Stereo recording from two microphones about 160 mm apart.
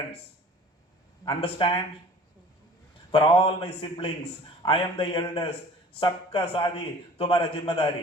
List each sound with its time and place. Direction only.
1.2 s a man's voice: 30° left (ahead or behind)
3.1 s a man's voice: 35° left (ahead or behind)